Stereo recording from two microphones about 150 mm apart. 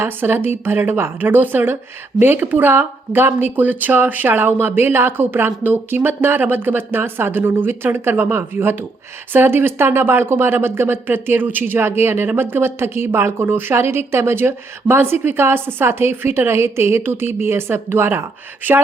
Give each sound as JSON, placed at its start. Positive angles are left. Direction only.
{"t": 0.0, "sound": "speech", "side_deg": -15}